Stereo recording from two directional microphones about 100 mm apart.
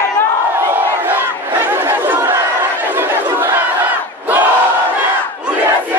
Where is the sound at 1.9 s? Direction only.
20° right (ahead or behind).